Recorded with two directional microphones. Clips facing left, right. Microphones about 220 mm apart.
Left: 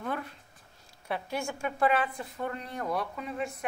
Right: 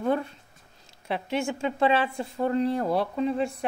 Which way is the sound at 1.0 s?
25° right (ahead or behind).